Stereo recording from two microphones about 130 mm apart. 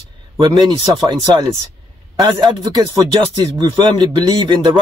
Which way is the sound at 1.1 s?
35° right (ahead or behind).